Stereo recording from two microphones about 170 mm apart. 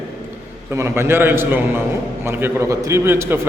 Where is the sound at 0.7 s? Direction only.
15° right (ahead or behind).